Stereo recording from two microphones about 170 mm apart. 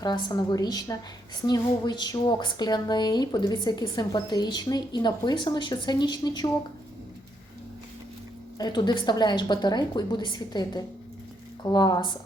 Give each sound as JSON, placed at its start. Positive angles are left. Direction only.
{"t": 0.0, "sound": "speech", "side_deg": 20}
{"t": 8.5, "sound": "speech", "side_deg": 25}